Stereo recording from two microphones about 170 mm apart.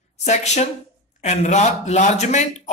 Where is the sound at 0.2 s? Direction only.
40° left (ahead or behind).